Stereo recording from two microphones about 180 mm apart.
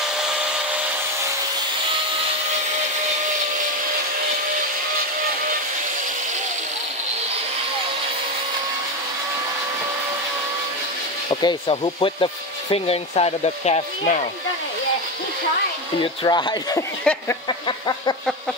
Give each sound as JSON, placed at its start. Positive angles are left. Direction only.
{"t": 0.2, "sound": "vacuum cleaner", "side_deg": -5}
{"t": 11.2, "sound": "speech", "side_deg": 25}
{"t": 16.0, "sound": "speech", "side_deg": 25}
{"t": 17.0, "sound": "speech", "side_deg": 5}
{"t": 17.5, "sound": "a sound", "side_deg": 25}